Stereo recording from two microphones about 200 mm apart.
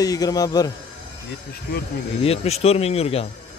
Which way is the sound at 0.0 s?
20° left (ahead or behind).